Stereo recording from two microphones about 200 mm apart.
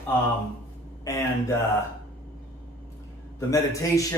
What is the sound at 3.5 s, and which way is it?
Speech, 15° left (ahead or behind).